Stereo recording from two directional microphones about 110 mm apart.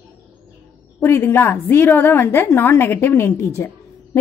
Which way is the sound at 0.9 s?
20° left (ahead or behind).